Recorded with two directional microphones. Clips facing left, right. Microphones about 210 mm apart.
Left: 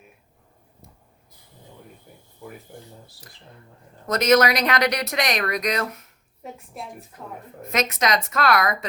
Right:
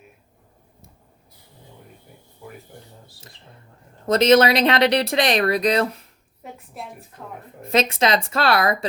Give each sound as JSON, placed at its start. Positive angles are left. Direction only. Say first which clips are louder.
{"t": 4.0, "sound": "speech", "louder": "right 3 dB", "side_deg": -30}
{"t": 6.8, "sound": "a woman's voice", "louder": "right 3 dB", "side_deg": 0}
{"t": 7.6, "sound": "speech", "louder": "right 4 dB", "side_deg": -30}